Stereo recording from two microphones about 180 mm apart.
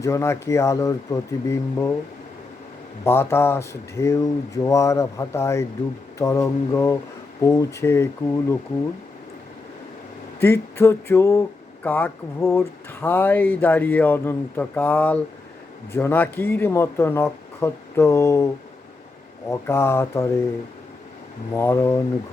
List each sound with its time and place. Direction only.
0.0 s speech: 15° left (ahead or behind)
3.0 s speech: 15° left (ahead or behind)
10.4 s speech: 10° left (ahead or behind)
21.5 s speech: 15° left (ahead or behind)